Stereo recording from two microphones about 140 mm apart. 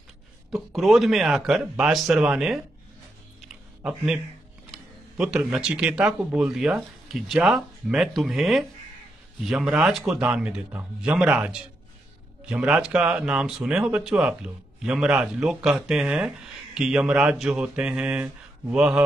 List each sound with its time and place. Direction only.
0.5 s speech: centre (ahead or behind)
3.8 s speech: 5° right (ahead or behind)